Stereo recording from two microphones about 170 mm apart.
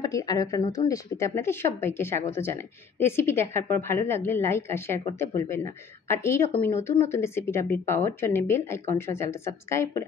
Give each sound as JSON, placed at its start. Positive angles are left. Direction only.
{"t": 0.0, "sound": "speech", "side_deg": 20}